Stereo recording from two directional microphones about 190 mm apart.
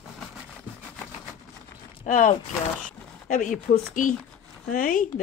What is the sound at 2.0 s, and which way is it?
Speech, 45° left (ahead or behind).